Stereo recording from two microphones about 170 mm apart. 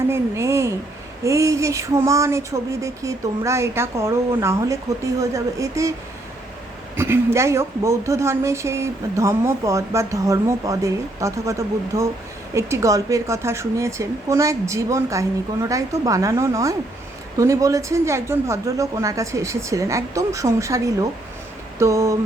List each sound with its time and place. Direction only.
0.1 s a woman's voice: 15° right (ahead or behind)
6.9 s a woman's voice: 15° right (ahead or behind)